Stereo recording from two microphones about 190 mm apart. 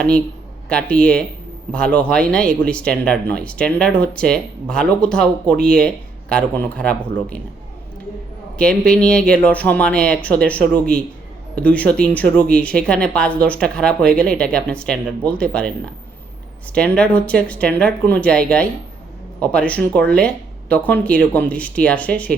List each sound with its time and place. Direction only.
0.7 s speech: 5° left (ahead or behind)
8.5 s speech: 5° left (ahead or behind)
16.7 s speech: 5° left (ahead or behind)